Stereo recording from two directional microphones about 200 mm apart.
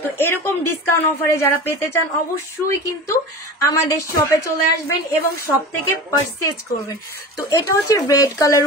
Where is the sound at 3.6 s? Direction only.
15° left (ahead or behind).